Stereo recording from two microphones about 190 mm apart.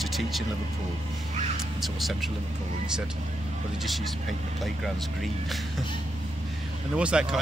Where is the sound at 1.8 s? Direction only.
Centre (ahead or behind).